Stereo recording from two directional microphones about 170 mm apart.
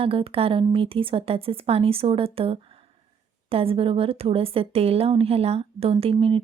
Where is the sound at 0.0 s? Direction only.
35° right (ahead or behind).